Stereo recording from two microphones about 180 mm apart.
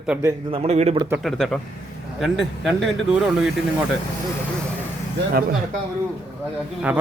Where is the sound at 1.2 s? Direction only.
Centre (ahead or behind).